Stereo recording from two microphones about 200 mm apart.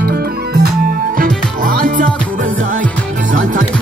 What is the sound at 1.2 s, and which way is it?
Music, 45° right (ahead or behind).